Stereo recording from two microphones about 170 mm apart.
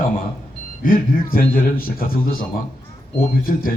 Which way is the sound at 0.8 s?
55° left (ahead or behind).